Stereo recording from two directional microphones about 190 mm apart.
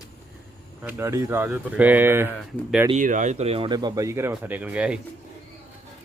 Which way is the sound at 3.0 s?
40° right (ahead or behind).